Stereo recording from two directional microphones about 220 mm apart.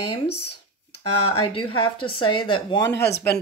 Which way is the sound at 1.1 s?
90° left.